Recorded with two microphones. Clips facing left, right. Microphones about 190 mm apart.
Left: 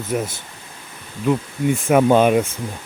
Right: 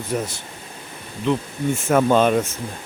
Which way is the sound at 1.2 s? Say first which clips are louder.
Left 2 dB; 10° left (ahead or behind).